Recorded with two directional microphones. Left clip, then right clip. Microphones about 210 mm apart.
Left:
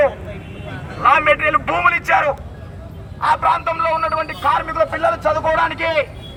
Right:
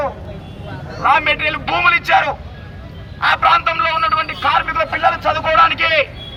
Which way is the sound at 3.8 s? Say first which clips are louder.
Right 2 dB; centre (ahead or behind).